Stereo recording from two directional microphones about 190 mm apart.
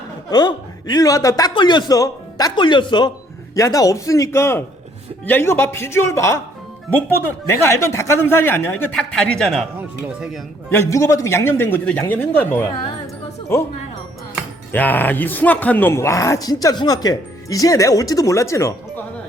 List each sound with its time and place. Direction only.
0.3 s a man's voice: 20° left (ahead or behind); by 10.4 s 5° right (ahead or behind)
10.7 s a man's voice: 15° left (ahead or behind)
14.7 s a man's voice: 10° left (ahead or behind)